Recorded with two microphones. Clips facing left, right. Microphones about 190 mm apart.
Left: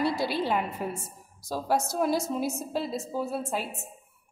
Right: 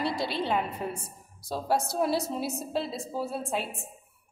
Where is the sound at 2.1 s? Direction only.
30° right (ahead or behind).